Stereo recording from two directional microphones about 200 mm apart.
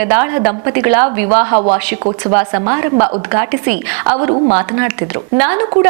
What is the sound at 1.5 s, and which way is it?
A woman's voice, 25° right (ahead or behind).